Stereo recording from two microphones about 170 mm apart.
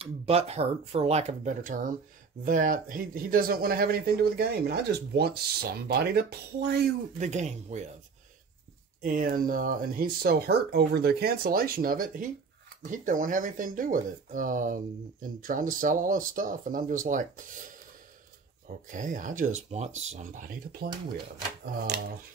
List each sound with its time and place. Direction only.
0.0 s speech: 35° right (ahead or behind); by 6.9 s 70° right (ahead or behind)
7.2 s speech: 45° right (ahead or behind)
9.0 s speech: 55° right (ahead or behind)
18.9 s speech: 50° right (ahead or behind)